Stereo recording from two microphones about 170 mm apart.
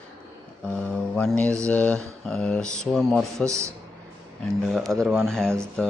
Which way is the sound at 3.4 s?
15° right (ahead or behind).